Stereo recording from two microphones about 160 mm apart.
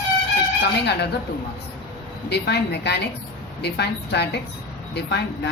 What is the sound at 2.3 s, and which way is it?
Speech, 90° left.